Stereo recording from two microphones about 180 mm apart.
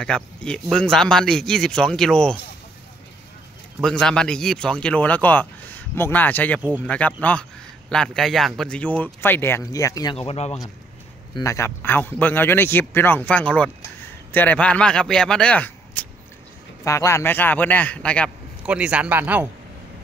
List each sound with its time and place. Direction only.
0.0 s a man's voice: 5° left (ahead or behind)
3.8 s speech: 5° left (ahead or behind)
10.1 s speech: 35° left (ahead or behind)
11.3 s speech: 15° left (ahead or behind)
18.7 s speech: 5° right (ahead or behind)